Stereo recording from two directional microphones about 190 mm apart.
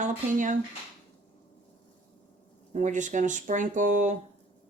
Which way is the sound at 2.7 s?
40° right (ahead or behind).